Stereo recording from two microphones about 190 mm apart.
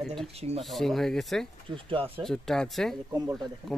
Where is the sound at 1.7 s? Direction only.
25° right (ahead or behind).